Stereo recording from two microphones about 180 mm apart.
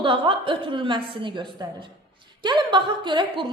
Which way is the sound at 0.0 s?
30° right (ahead or behind).